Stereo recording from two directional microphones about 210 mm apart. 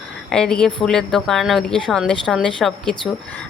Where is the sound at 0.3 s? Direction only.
5° left (ahead or behind).